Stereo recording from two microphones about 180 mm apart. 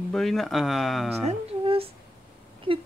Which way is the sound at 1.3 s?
30° right (ahead or behind).